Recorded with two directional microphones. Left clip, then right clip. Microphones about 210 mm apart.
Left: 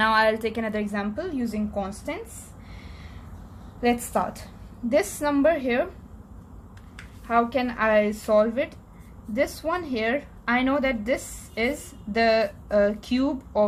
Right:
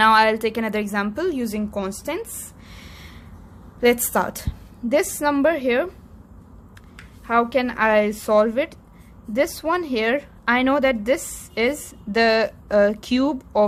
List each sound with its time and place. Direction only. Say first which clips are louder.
0.0 s a woman's voice: right 5 dB; 30° right (ahead or behind)
3.8 s a woman's voice: right 5 dB; 40° right (ahead or behind)
7.3 s a woman's voice: right 3 dB; 45° right (ahead or behind)